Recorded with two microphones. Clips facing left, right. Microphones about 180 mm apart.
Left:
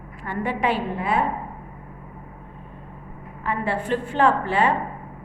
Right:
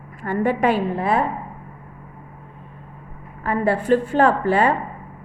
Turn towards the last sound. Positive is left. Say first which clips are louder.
# right 3 dB
turn(degrees=-40)  # may be behind; listen again after turning